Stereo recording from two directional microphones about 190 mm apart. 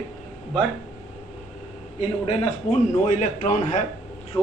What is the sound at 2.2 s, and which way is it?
A man's voice, 30° left (ahead or behind).